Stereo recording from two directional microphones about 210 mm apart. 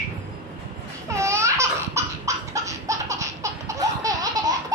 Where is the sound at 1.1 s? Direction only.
15° right (ahead or behind).